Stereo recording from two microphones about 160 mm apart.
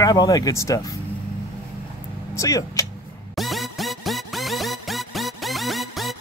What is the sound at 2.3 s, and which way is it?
Speech, 20° left (ahead or behind).